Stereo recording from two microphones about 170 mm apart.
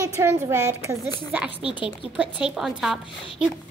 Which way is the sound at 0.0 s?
15° right (ahead or behind).